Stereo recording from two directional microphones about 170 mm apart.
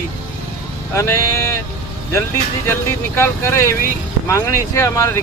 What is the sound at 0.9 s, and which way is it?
Speech, 15° left (ahead or behind).